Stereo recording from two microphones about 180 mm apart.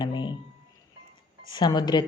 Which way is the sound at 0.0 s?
25° left (ahead or behind).